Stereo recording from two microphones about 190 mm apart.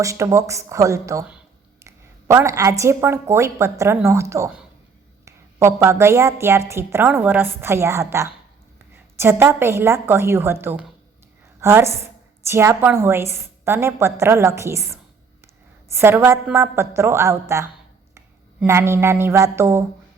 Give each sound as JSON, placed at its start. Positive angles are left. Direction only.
{"t": 0.0, "sound": "a woman's voice", "side_deg": -15}